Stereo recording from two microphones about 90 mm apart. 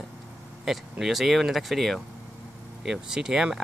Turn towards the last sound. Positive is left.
turn(degrees=-10)  # may be behind; listen again after turning